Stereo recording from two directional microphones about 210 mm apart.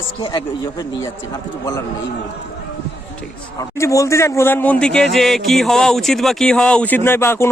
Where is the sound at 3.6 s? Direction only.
15° left (ahead or behind).